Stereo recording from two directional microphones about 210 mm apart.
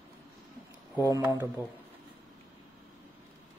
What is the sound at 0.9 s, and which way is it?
Speech, 15° right (ahead or behind).